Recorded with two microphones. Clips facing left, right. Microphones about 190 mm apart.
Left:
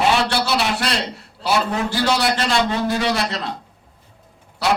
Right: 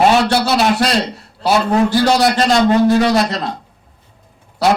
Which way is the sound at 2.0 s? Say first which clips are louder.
Right 6 dB; 40° right (ahead or behind).